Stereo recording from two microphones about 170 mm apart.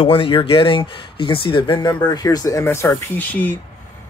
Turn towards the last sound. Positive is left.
turn(degrees=10)  # may be behind; listen again after turning